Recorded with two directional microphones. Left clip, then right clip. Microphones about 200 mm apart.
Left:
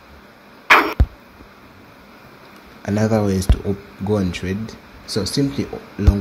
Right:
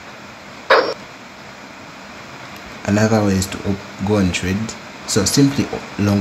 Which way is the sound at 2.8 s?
20° left (ahead or behind).